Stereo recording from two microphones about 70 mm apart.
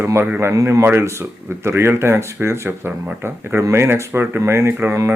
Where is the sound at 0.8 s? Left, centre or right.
Right.